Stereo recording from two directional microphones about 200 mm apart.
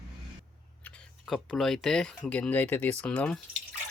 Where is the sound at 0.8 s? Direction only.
5° left (ahead or behind).